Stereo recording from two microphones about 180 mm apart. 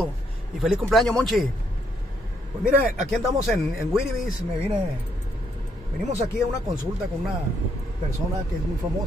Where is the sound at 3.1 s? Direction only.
Centre (ahead or behind).